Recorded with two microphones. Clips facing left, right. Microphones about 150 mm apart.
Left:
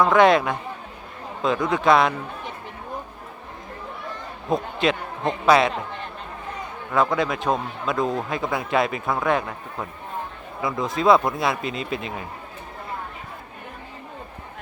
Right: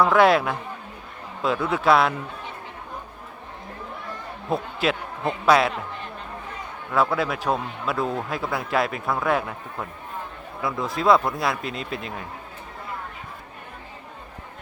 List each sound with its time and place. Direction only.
0.0 s a man's voice: 5° right (ahead or behind)
1.6 s a man's voice: 5° right (ahead or behind)
4.8 s a man's voice: 5° right (ahead or behind)
6.9 s a man's voice: 5° right (ahead or behind)